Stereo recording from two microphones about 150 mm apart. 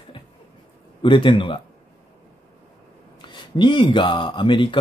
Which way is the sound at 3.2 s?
30° left (ahead or behind).